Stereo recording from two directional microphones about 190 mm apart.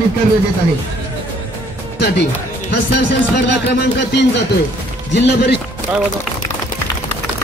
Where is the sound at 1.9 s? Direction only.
65° left (ahead or behind).